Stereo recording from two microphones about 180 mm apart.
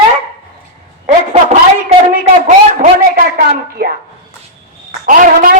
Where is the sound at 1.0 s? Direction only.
35° right (ahead or behind).